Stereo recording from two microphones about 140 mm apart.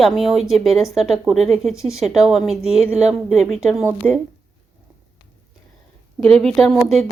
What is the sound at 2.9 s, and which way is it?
Speech, 55° right (ahead or behind).